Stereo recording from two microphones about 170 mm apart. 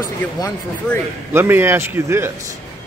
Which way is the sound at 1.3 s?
15° right (ahead or behind).